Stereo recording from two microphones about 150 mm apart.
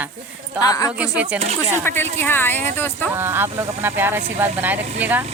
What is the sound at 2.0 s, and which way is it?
A woman's voice, 15° left (ahead or behind).